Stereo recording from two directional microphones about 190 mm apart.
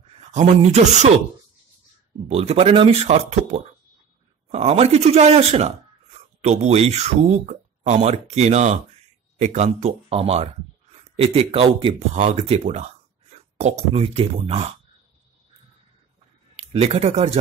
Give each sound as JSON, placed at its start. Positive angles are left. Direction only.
{"t": 0.0, "sound": "speech", "side_deg": -35}
{"t": 2.2, "sound": "speech", "side_deg": -35}
{"t": 16.5, "sound": "speech", "side_deg": -30}